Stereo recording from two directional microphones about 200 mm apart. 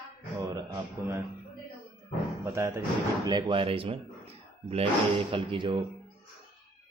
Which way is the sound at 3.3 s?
20° right (ahead or behind).